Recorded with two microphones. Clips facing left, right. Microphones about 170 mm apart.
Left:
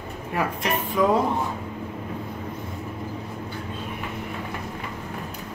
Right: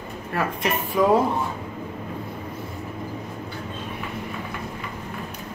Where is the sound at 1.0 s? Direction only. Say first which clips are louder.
Right 2 dB; 10° right (ahead or behind).